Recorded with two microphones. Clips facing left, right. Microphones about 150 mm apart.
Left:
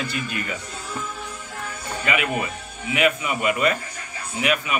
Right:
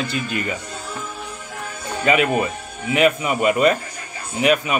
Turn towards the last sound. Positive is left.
turn(degrees=-25)  # may be behind; listen again after turning